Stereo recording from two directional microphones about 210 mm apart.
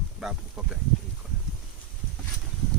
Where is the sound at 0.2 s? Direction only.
5° right (ahead or behind).